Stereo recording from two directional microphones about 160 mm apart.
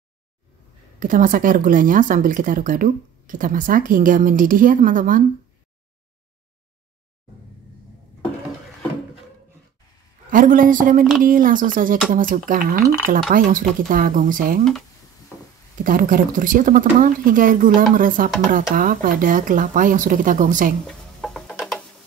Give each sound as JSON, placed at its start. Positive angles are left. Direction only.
{"t": 0.9, "sound": "speech", "side_deg": -55}
{"t": 10.3, "sound": "speech", "side_deg": -60}
{"t": 15.8, "sound": "speech", "side_deg": -55}
{"t": 20.8, "sound": "music", "side_deg": 0}